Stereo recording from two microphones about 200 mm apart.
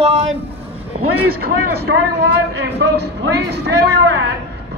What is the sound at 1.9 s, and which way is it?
Speech, 70° right (ahead or behind).